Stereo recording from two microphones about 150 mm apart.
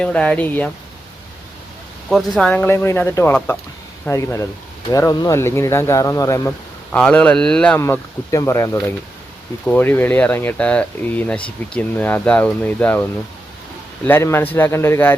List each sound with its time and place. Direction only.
0.0 s speech: 10° left (ahead or behind)
2.0 s speech: 5° left (ahead or behind); by 6.5 s 20° left (ahead or behind)
6.9 s speech: 5° left (ahead or behind)
7.8 s speech: 20° left (ahead or behind)